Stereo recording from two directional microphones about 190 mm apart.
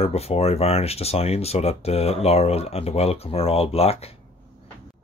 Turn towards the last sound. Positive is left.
turn(degrees=30)  # may be behind; listen again after turning